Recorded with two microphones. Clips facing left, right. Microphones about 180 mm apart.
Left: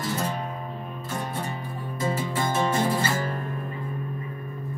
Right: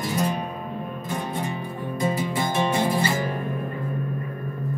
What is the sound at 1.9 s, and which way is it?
Music, 15° right (ahead or behind).